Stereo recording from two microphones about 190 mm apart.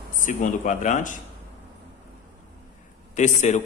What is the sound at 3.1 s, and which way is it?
Speech, 40° left (ahead or behind).